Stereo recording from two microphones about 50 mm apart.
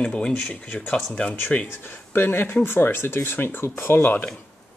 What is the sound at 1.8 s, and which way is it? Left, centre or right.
Speech, left.